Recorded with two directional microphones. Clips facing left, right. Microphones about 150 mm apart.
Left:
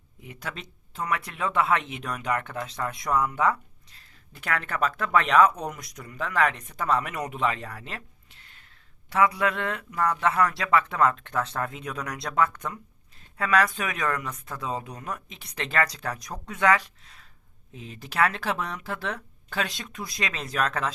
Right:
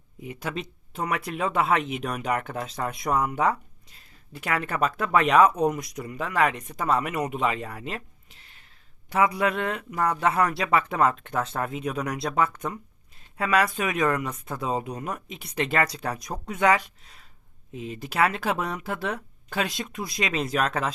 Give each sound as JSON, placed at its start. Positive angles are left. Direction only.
{"t": 0.3, "sound": "speech", "side_deg": -15}
{"t": 4.4, "sound": "speech", "side_deg": -10}
{"t": 9.1, "sound": "speech", "side_deg": -20}
{"t": 13.3, "sound": "speech", "side_deg": -10}
{"t": 15.4, "sound": "speech", "side_deg": -10}